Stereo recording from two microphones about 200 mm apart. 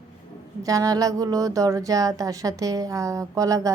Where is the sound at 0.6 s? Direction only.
15° right (ahead or behind).